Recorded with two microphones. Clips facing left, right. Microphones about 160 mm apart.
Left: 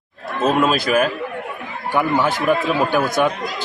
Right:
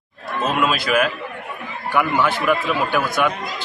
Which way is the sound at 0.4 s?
40° left (ahead or behind).